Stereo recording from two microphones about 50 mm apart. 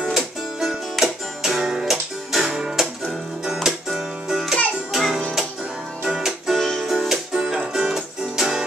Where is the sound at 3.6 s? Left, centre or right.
Centre.